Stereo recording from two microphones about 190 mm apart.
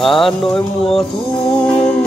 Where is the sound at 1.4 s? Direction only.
30° left (ahead or behind).